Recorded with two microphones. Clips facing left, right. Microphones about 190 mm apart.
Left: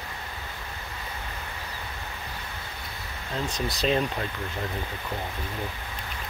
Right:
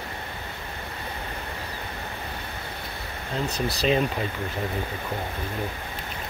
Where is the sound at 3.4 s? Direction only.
Centre (ahead or behind).